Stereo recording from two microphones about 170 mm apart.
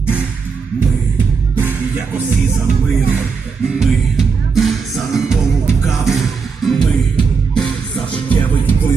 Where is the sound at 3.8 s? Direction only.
Centre (ahead or behind).